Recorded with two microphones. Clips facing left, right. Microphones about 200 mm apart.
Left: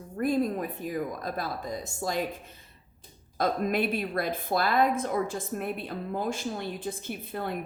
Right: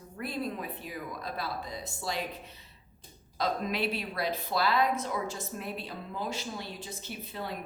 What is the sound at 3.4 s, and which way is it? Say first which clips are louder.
Speech: left 4 dB; 50° left (ahead or behind).